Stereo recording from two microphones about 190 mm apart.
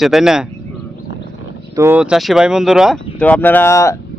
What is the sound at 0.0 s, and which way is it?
Speech, centre (ahead or behind).